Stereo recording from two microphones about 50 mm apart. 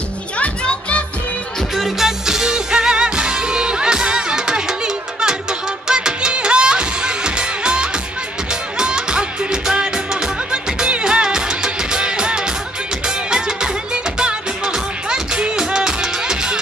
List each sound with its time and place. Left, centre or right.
0.4 s music: left
1.8 s music: centre